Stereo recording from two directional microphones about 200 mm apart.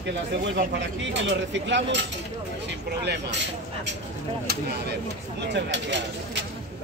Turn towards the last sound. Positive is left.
turn(degrees=-60)  # may be behind; listen again after turning